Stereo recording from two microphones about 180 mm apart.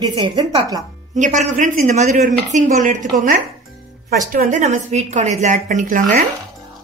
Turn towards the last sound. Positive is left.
turn(degrees=-45)  # may be behind; listen again after turning